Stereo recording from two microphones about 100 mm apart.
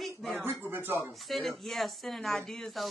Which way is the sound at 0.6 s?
20° right (ahead or behind).